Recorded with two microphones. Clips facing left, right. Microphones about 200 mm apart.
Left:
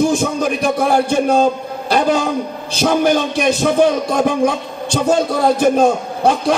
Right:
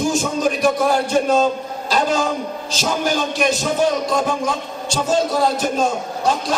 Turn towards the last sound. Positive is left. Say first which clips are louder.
# left 5 dB
turn(degrees=60)  # may be behind; listen again after turning